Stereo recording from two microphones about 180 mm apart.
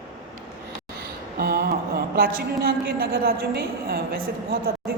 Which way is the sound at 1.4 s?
60° right (ahead or behind).